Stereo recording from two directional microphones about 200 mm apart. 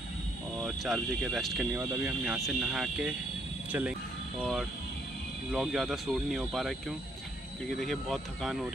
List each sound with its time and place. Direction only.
0.6 s speech: centre (ahead or behind)
4.4 s speech: centre (ahead or behind)